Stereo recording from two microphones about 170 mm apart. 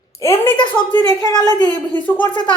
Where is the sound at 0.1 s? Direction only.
15° left (ahead or behind).